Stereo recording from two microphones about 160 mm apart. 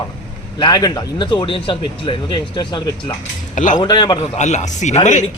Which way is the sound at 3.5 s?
50° left (ahead or behind).